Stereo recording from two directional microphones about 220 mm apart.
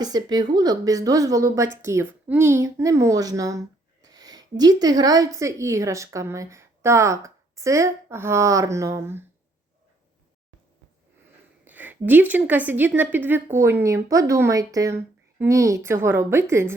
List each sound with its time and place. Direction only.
0.0 s a woman's voice: 20° right (ahead or behind)
11.6 s a woman's voice: 10° right (ahead or behind)